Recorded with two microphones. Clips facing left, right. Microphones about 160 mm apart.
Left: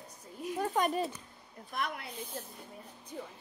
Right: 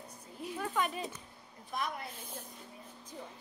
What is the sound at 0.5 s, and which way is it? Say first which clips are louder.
Speech: left 5 dB; 40° left (ahead or behind).